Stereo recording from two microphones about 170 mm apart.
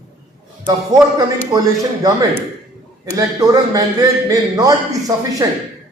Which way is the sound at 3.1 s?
20° right (ahead or behind).